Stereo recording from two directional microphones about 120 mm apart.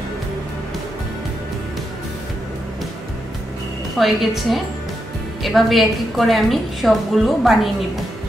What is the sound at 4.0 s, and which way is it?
Speech, centre (ahead or behind).